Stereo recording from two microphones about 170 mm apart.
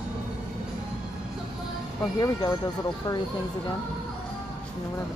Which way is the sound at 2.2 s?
20° left (ahead or behind).